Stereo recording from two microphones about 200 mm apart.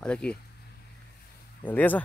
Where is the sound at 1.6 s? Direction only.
10° left (ahead or behind).